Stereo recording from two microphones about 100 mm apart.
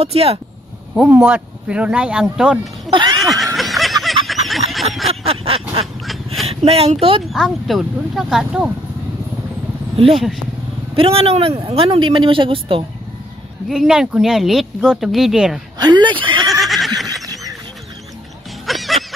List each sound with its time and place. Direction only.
0.0 s speech: 80° right
1.0 s speech: 15° right (ahead or behind)
2.9 s speech: 50° right (ahead or behind)
3.2 s snicker: centre (ahead or behind)
4.0 s a sound: centre (ahead or behind)
5.0 s a sound: 75° right (ahead or behind)
6.4 s speech: 80° right
7.2 s speech: centre (ahead or behind)
9.9 s speech: 70° right (ahead or behind)
13.7 s speech: 5° right (ahead or behind)
15.8 s speech: 50° right (ahead or behind)
16.6 s a sound: centre (ahead or behind)
17.1 s a sound: 35° right (ahead or behind)
18.7 s music: centre (ahead or behind)